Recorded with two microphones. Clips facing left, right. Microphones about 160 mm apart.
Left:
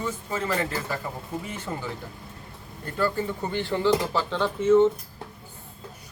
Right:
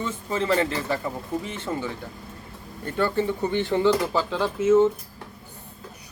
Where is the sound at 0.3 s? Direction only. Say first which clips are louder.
Right 6 dB; 25° right (ahead or behind).